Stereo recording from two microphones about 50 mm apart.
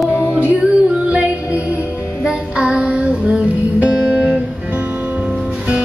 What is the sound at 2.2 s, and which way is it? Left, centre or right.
Music, centre.